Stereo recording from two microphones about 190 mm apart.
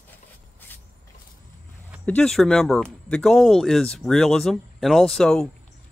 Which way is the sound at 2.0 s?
5° left (ahead or behind).